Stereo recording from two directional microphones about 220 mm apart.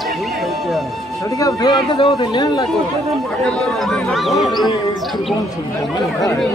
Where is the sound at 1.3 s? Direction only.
15° left (ahead or behind).